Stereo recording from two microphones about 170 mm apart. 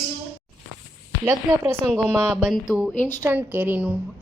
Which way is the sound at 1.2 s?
15° right (ahead or behind).